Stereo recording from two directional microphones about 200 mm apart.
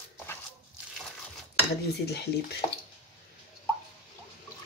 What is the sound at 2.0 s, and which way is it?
Speech, 55° left (ahead or behind).